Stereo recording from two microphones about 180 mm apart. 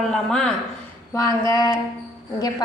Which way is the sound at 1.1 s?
15° left (ahead or behind).